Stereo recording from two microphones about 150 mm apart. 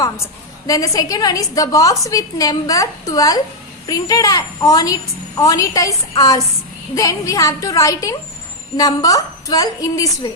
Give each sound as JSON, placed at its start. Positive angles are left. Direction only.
{"t": 0.7, "sound": "a woman's voice", "side_deg": 25}